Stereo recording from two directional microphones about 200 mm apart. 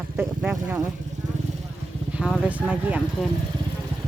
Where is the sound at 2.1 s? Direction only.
5° right (ahead or behind).